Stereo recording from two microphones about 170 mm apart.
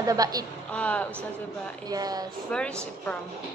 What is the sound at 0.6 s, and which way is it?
Speech, 10° left (ahead or behind).